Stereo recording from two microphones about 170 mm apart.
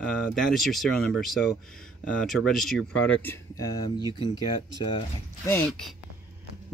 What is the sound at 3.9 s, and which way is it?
Speech, 25° left (ahead or behind).